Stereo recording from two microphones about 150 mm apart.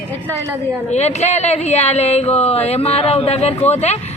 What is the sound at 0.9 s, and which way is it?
Speech, 45° left (ahead or behind).